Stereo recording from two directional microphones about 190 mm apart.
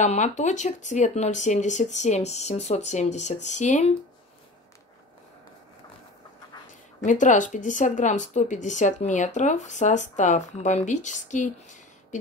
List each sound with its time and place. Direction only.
0.0 s speech: 40° left (ahead or behind)
7.1 s speech: 40° left (ahead or behind)